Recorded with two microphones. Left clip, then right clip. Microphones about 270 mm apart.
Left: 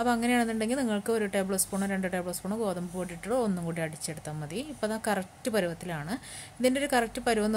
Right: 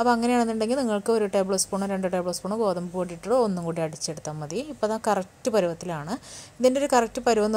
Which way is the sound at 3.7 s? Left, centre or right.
Centre.